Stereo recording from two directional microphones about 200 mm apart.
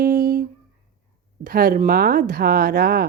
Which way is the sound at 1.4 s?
45° right (ahead or behind).